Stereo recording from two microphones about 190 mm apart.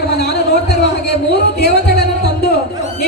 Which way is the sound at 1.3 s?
60° left (ahead or behind).